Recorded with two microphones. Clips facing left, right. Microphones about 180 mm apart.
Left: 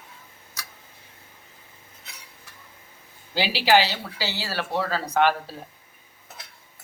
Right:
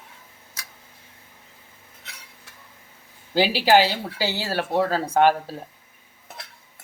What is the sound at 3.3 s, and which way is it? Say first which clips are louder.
Speech: right 3 dB; 45° right (ahead or behind).